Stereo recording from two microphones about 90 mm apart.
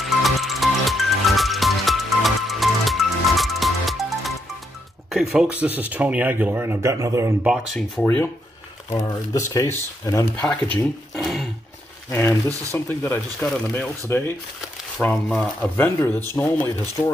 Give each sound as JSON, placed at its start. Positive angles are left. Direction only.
{"t": 0.0, "sound": "music", "side_deg": 0}
{"t": 5.1, "sound": "speech", "side_deg": -5}
{"t": 7.4, "sound": "speech", "side_deg": -5}
{"t": 7.9, "sound": "speech", "side_deg": 10}
{"t": 9.1, "sound": "speech", "side_deg": 45}
{"t": 10.4, "sound": "speech", "side_deg": 10}
{"t": 11.1, "sound": "roaring cats", "side_deg": 0}
{"t": 12.1, "sound": "speech", "side_deg": 30}
{"t": 16.1, "sound": "speech", "side_deg": 25}